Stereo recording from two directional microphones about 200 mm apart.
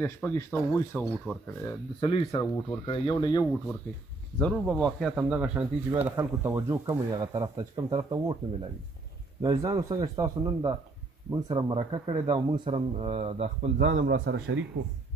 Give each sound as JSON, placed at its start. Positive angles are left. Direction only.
{"t": 0.0, "sound": "speech", "side_deg": 10}
{"t": 2.0, "sound": "speech", "side_deg": 25}
{"t": 4.4, "sound": "speech", "side_deg": 5}
{"t": 9.4, "sound": "a man's voice", "side_deg": -15}